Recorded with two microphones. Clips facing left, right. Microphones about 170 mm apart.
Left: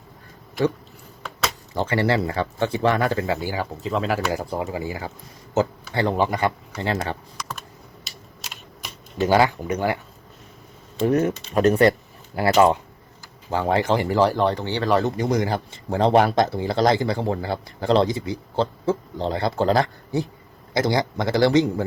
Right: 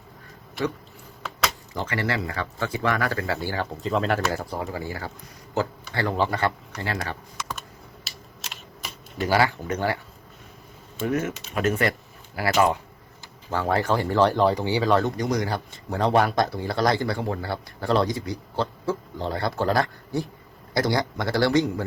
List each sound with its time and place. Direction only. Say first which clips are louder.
1.7 s a man's voice: left 9 dB; 30° left (ahead or behind); by 4.3 s centre (ahead or behind)
4.3 s a man's voice: left 3 dB; 15° left (ahead or behind)
8.0 s typing: right 1 dB; centre (ahead or behind)
9.1 s speech: left 4 dB; 20° left (ahead or behind)
11.0 s a man's voice: left 6 dB; 35° left (ahead or behind)
13.5 s speech: left 3 dB; 15° left (ahead or behind)
14.4 s speech: right 1 dB; 10° right (ahead or behind)
15.0 s a man's voice: left 3 dB; 25° left (ahead or behind)